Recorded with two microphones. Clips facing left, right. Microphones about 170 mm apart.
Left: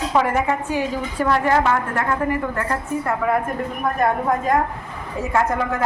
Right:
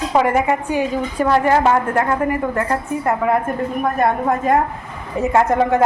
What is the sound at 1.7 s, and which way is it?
Speech, 40° right (ahead or behind).